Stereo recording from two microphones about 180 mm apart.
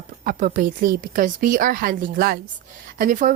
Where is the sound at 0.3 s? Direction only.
50° right (ahead or behind).